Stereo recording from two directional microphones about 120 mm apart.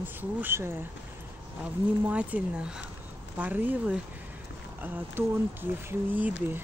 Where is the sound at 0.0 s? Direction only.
15° right (ahead or behind).